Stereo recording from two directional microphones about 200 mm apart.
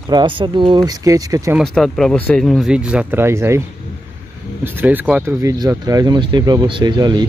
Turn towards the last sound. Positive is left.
turn(degrees=-20)  # may be behind; listen again after turning